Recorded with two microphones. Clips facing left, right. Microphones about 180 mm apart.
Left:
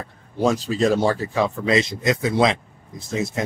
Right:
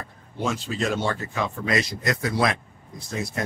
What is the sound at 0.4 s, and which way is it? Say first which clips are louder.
Speech: left 7 dB; 35° left (ahead or behind).